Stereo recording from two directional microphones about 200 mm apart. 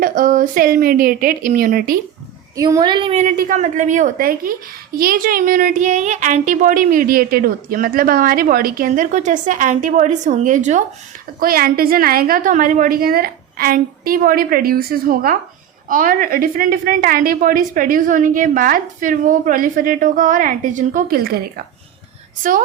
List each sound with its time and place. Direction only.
0.0 s a woman's voice: 40° right (ahead or behind)
2.6 s a woman's voice: 20° right (ahead or behind); by 21.6 s 50° right (ahead or behind)